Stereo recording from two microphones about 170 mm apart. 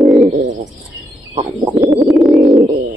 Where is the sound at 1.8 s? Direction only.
10° right (ahead or behind).